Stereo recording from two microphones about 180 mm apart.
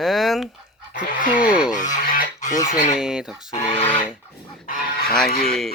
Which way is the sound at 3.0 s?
5° right (ahead or behind).